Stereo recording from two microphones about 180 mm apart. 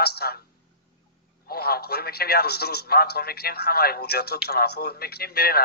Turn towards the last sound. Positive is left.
turn(degrees=60)  # may be behind; listen again after turning